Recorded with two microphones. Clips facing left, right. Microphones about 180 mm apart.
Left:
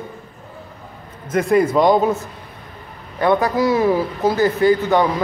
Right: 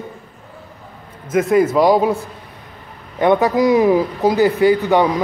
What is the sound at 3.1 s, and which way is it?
A man's voice, 20° right (ahead or behind).